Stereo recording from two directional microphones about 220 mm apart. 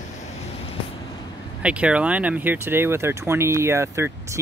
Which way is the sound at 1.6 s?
5° right (ahead or behind).